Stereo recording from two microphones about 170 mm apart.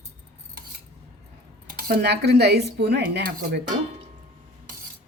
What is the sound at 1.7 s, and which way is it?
Speech, 70° right (ahead or behind).